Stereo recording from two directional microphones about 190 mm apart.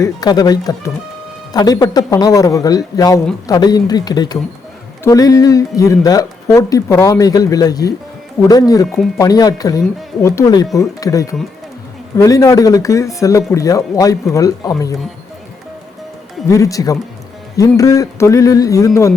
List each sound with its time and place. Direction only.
0.0 s a man's voice: 20° left (ahead or behind)
16.5 s speech: 15° left (ahead or behind)